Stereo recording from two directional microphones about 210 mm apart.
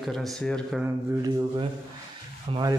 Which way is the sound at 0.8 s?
15° right (ahead or behind).